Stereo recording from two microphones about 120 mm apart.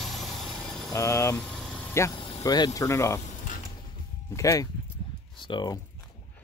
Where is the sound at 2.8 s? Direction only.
25° left (ahead or behind).